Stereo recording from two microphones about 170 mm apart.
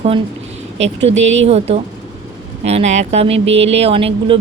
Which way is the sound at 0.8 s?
40° right (ahead or behind).